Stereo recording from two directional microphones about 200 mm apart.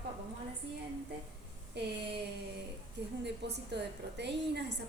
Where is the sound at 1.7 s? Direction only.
60° right (ahead or behind).